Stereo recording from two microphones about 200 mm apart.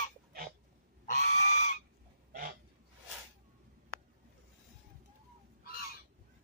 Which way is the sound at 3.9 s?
90° left.